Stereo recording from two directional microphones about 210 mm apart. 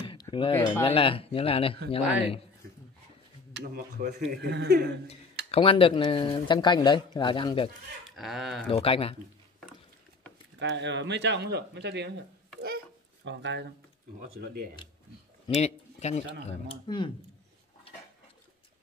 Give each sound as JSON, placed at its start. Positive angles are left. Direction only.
{"t": 0.0, "sound": "a sound", "side_deg": 25}
{"t": 0.8, "sound": "a man's voice", "side_deg": 25}
{"t": 3.5, "sound": "speech", "side_deg": -50}
{"t": 5.5, "sound": "a man's voice", "side_deg": 25}
{"t": 8.2, "sound": "speech", "side_deg": 0}
{"t": 8.6, "sound": "a man's voice", "side_deg": 25}
{"t": 10.6, "sound": "speech", "side_deg": -55}
{"t": 12.6, "sound": "babbling", "side_deg": -55}
{"t": 15.4, "sound": "a man's voice", "side_deg": 30}